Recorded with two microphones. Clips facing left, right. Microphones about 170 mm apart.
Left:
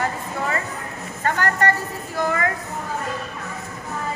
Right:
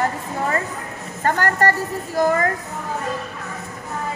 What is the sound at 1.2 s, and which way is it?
A woman's voice, 40° right (ahead or behind).